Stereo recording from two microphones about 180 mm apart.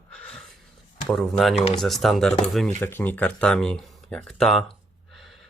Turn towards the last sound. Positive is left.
turn(degrees=0)  # may be behind; listen again after turning